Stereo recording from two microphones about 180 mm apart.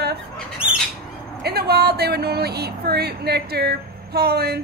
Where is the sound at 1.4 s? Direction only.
60° right (ahead or behind).